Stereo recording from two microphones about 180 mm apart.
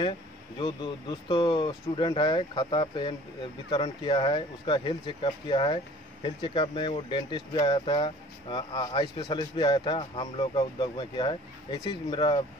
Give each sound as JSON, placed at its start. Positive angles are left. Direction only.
{"t": 0.6, "sound": "speech", "side_deg": 25}